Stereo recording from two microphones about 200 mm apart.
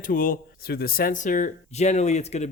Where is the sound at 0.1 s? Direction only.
45° left (ahead or behind).